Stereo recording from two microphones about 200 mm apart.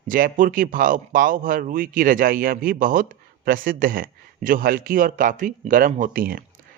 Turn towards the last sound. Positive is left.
turn(degrees=-45)  # may be behind; listen again after turning